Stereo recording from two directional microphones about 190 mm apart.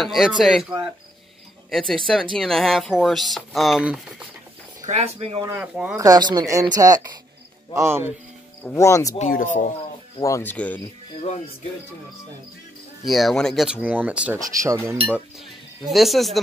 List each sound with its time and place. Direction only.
0.0 s speech: centre (ahead or behind)
1.7 s speech: centre (ahead or behind)
4.8 s speech: 35° right (ahead or behind)
5.6 s speech: 5° right (ahead or behind)
5.9 s speech: 20° right (ahead or behind)
8.6 s speech: 15° left (ahead or behind)
9.3 s speech: 45° left (ahead or behind)
10.2 s speech: 15° left (ahead or behind)
13.0 s speech: centre (ahead or behind)